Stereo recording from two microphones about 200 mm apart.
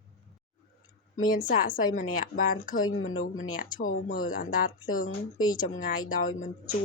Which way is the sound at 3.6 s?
40° left (ahead or behind).